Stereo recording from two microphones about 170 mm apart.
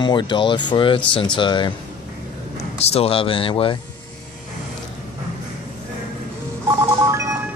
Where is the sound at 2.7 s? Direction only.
35° left (ahead or behind).